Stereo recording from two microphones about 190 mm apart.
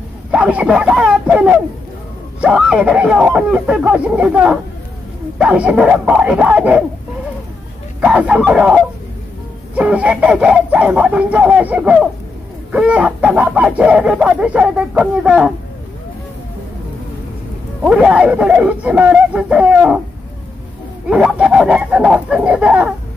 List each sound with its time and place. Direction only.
0.3 s speech: 5° right (ahead or behind)
8.0 s speech: 5° right (ahead or behind)
17.8 s speech: 5° right (ahead or behind)
21.1 s speech: 5° right (ahead or behind)